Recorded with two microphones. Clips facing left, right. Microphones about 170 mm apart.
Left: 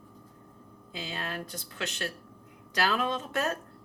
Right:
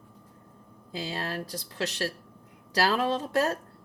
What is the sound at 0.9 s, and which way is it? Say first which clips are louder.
Speech: right 4 dB; 35° right (ahead or behind).